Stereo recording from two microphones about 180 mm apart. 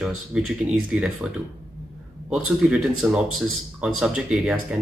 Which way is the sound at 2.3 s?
5° right (ahead or behind).